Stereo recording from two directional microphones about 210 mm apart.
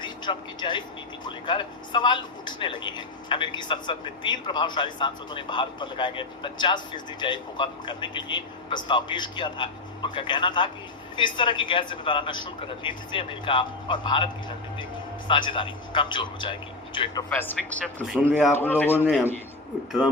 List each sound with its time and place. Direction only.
0.0 s speech: 20° left (ahead or behind)
15.3 s speech: 25° left (ahead or behind)
17.2 s speech: 10° left (ahead or behind)
18.5 s speech: 10° left (ahead or behind)